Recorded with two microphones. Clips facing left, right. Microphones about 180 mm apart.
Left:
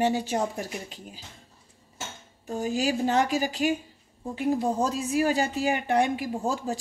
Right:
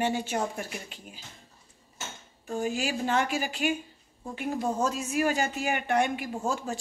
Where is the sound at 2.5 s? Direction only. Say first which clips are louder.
Left 3 dB; 35° left (ahead or behind).